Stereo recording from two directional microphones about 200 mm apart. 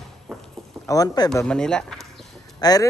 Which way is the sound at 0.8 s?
15° left (ahead or behind).